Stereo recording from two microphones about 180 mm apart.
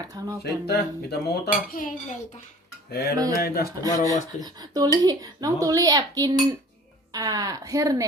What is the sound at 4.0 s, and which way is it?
Speech, 20° right (ahead or behind).